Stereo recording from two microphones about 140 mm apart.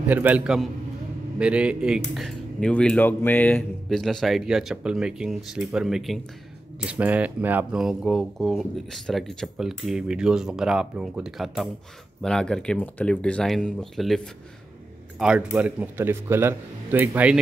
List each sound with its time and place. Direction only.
0.1 s a man's voice: 10° right (ahead or behind); by 4.0 s 10° left (ahead or behind)
4.0 s a man's voice: centre (ahead or behind)